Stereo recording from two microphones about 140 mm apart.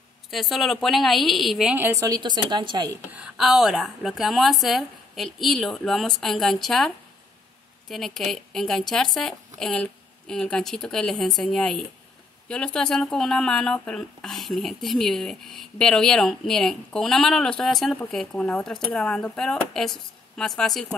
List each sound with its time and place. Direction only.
0.3 s speech: centre (ahead or behind)
1.8 s a woman's voice: 20° right (ahead or behind)
3.1 s speech: 5° right (ahead or behind)
7.9 s speech: centre (ahead or behind)